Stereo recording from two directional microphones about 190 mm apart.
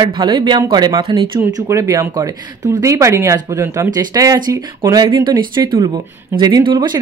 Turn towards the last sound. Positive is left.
turn(degrees=-25)  # may be behind; listen again after turning